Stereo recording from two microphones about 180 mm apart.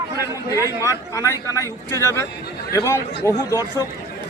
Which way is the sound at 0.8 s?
15° left (ahead or behind).